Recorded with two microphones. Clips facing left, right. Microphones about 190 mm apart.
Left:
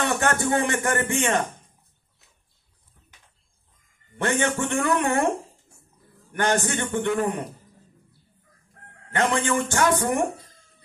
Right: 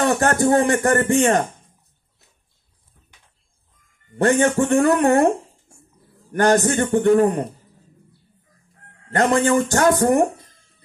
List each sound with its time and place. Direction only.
0.0 s speech: 35° right (ahead or behind)
4.2 s speech: 35° right (ahead or behind)
9.1 s speech: 40° right (ahead or behind)